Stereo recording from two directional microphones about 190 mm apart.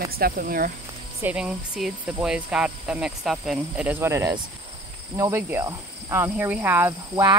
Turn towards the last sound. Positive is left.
turn(degrees=-15)  # may be behind; listen again after turning